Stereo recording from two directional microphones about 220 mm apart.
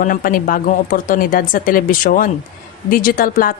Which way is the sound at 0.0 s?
40° left (ahead or behind).